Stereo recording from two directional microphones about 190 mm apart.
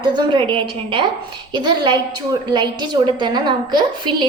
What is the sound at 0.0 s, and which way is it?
A woman's voice, 25° right (ahead or behind).